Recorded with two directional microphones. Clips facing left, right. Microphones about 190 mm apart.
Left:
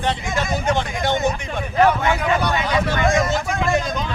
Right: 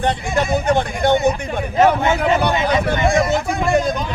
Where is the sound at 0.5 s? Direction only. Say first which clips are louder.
Right 3 dB; 55° right (ahead or behind).